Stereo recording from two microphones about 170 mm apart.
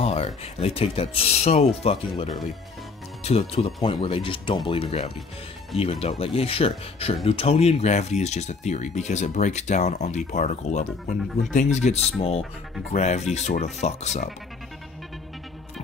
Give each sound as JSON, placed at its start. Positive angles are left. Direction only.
{"t": 0.0, "sound": "speech", "side_deg": 35}
{"t": 3.3, "sound": "speech", "side_deg": 35}